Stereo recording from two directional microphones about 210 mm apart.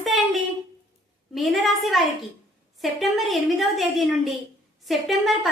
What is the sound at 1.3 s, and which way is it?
A woman's voice, centre (ahead or behind).